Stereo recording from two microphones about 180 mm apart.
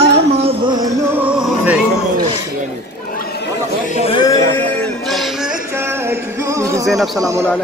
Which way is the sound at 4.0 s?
30° left (ahead or behind).